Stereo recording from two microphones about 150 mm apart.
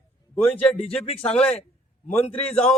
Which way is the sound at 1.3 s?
5° left (ahead or behind).